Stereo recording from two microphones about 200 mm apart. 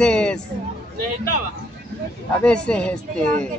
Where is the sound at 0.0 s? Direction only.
5° left (ahead or behind).